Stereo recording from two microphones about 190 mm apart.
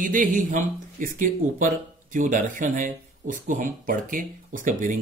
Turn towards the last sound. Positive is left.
turn(degrees=-45)  # may be behind; listen again after turning